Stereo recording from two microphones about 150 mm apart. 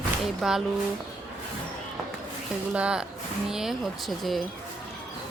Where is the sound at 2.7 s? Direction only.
5° right (ahead or behind).